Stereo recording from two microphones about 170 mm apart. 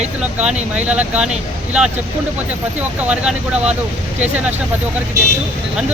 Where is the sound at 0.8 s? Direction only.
5° right (ahead or behind).